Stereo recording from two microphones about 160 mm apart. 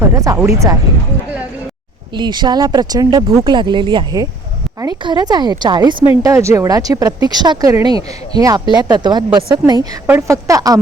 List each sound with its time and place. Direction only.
0.3 s speech: 20° right (ahead or behind)
2.1 s speech: 30° right (ahead or behind)
6.2 s speech: 15° right (ahead or behind)
10.1 s speech: 15° right (ahead or behind)